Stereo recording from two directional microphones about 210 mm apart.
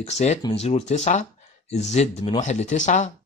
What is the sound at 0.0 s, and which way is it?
Speech, 30° left (ahead or behind).